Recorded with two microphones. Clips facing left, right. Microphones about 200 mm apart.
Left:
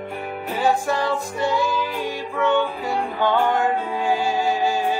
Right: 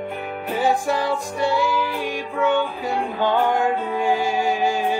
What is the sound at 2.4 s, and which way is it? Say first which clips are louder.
Music: even; 15° right (ahead or behind).